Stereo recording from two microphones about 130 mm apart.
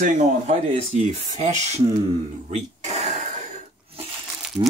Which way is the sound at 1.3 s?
65° right (ahead or behind).